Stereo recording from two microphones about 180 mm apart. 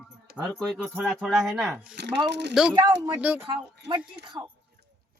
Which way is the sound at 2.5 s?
Centre (ahead or behind).